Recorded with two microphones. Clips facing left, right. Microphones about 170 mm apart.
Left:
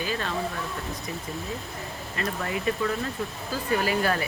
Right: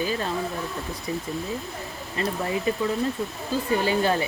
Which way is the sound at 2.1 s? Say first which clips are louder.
Right 4 dB; 25° right (ahead or behind).